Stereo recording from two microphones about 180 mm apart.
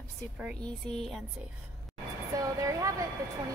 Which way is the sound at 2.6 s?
20° right (ahead or behind).